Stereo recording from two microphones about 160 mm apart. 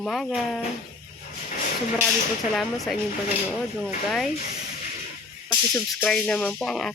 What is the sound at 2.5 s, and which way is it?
Speech, centre (ahead or behind).